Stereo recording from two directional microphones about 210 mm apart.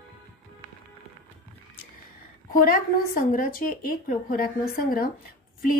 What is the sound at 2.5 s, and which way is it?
A woman's voice, 45° left (ahead or behind).